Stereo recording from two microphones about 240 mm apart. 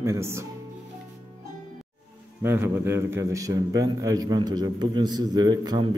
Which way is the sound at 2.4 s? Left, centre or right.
Centre.